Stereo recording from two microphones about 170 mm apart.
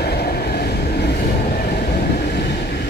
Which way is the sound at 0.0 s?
70° left (ahead or behind).